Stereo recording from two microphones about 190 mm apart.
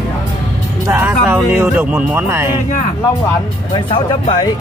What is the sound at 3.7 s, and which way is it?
Speech, 30° left (ahead or behind).